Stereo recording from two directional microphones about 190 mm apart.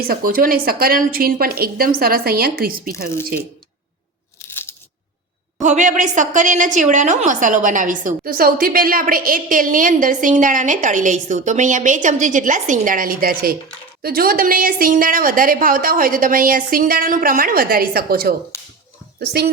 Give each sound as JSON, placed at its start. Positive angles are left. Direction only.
{"t": 0.0, "sound": "a woman's voice", "side_deg": -50}
{"t": 4.4, "sound": "crunch", "side_deg": 10}
{"t": 5.6, "sound": "a woman's voice", "side_deg": -40}